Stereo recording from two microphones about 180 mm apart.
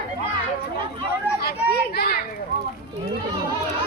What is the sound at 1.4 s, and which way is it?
Speech, 60° left (ahead or behind).